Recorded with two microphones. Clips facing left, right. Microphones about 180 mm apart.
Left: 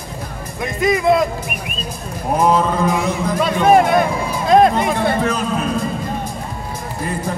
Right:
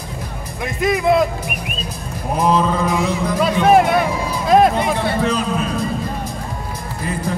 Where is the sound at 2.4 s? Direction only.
50° left (ahead or behind).